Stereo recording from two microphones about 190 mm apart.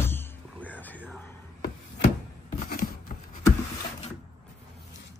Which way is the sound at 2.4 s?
50° left (ahead or behind).